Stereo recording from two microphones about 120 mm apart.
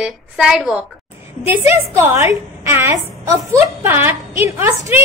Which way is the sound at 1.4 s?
25° right (ahead or behind).